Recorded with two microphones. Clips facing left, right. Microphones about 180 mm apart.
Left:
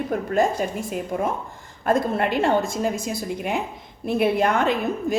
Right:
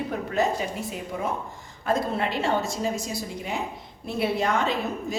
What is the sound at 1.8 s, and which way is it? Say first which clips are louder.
A woman's voice: left 4 dB; 55° left (ahead or behind).